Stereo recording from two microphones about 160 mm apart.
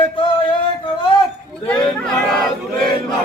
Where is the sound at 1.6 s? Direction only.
5° left (ahead or behind).